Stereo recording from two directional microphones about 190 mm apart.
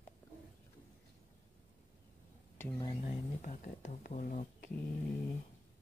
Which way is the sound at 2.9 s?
35° left (ahead or behind).